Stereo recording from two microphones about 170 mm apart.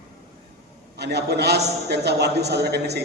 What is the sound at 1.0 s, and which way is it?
A man's voice, 75° right (ahead or behind).